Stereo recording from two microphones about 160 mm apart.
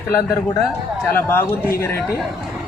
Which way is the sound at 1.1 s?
15° left (ahead or behind).